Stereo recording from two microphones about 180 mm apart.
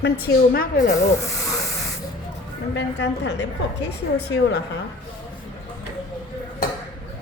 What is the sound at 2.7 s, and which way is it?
A woman's voice, 75° left (ahead or behind).